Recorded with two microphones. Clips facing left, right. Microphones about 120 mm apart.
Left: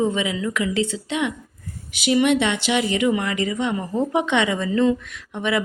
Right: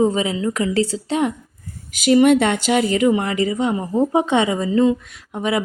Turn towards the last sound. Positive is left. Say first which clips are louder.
# right 2 dB
turn(degrees=-35)  # may be behind; listen again after turning